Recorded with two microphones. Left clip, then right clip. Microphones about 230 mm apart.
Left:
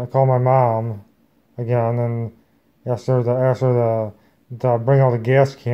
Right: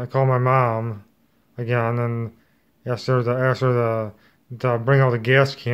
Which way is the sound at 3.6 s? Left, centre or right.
Centre.